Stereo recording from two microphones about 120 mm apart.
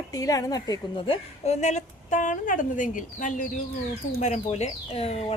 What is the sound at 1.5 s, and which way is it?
A woman's voice, 75° left (ahead or behind).